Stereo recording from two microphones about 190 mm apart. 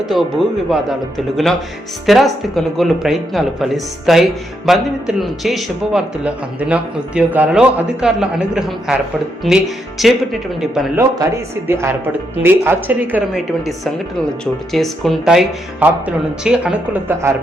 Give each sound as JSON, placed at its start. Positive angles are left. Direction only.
{"t": 0.0, "sound": "speech", "side_deg": 0}
{"t": 2.0, "sound": "speech", "side_deg": 0}
{"t": 10.9, "sound": "a woman's voice", "side_deg": -15}